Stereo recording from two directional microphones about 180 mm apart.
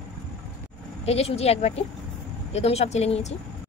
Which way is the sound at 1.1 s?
35° left (ahead or behind).